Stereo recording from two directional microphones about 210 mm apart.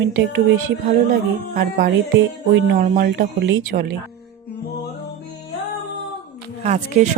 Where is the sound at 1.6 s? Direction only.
45° right (ahead or behind).